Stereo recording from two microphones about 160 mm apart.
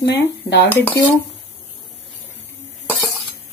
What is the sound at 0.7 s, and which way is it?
Dishes, 15° left (ahead or behind).